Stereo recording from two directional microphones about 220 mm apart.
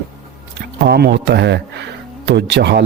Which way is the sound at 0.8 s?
50° right (ahead or behind).